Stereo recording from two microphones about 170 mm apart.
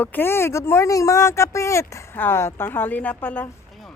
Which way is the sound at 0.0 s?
10° left (ahead or behind).